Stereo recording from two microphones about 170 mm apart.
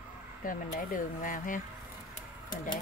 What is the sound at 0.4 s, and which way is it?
Speech, 55° left (ahead or behind).